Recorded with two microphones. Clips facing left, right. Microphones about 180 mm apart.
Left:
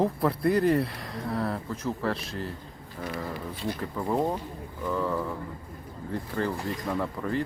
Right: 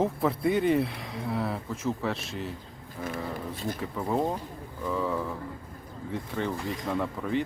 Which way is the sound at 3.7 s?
5° right (ahead or behind).